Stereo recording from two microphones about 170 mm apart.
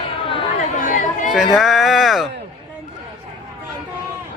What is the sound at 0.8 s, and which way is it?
Chatter, 45° left (ahead or behind).